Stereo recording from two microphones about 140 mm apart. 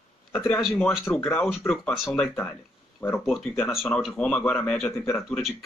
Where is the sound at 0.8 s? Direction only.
15° left (ahead or behind).